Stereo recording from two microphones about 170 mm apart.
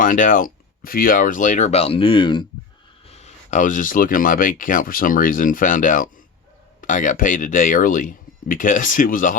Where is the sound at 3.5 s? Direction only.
50° left (ahead or behind).